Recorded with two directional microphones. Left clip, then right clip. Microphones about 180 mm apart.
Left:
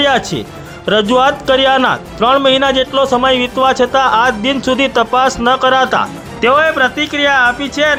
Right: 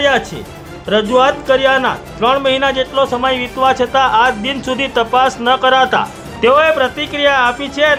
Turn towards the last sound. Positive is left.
turn(degrees=10)  # may be behind; listen again after turning